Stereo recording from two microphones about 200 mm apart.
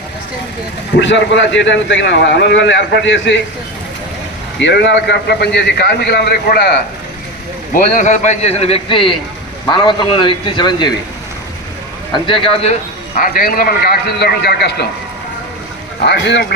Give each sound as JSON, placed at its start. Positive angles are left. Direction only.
{"t": 0.9, "sound": "a man's voice", "side_deg": 65}
{"t": 4.6, "sound": "a man's voice", "side_deg": 60}
{"t": 7.7, "sound": "a man's voice", "side_deg": 35}
{"t": 12.1, "sound": "a man's voice", "side_deg": 25}
{"t": 13.1, "sound": "a man's voice", "side_deg": 45}
{"t": 16.0, "sound": "a man's voice", "side_deg": 60}